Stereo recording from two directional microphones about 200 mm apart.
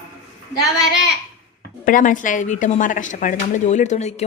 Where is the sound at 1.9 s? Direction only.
40° left (ahead or behind).